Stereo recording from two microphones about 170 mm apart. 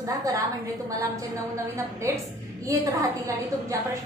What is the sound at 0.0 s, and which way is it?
A woman's voice, 20° right (ahead or behind).